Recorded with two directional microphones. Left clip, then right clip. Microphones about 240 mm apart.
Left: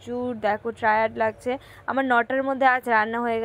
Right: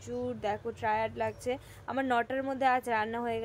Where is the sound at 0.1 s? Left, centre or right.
Centre.